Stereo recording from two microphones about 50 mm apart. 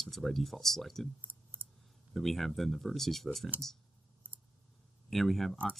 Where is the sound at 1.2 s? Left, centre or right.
Right.